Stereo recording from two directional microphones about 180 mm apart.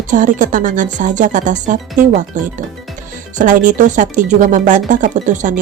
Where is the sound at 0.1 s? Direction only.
45° right (ahead or behind).